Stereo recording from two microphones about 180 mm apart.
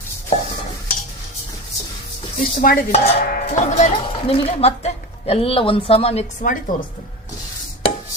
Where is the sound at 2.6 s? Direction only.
55° left (ahead or behind).